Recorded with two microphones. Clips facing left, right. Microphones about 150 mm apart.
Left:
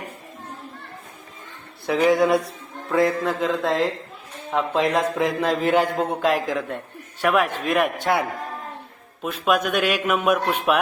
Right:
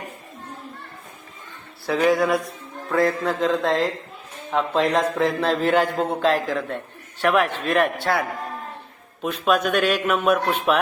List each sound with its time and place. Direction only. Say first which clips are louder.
1.9 s a sound: left 1 dB; 15° left (ahead or behind)
2.9 s a man's voice: left 1 dB; 10° left (ahead or behind)
9.2 s a man's voice: right 1 dB; 5° left (ahead or behind)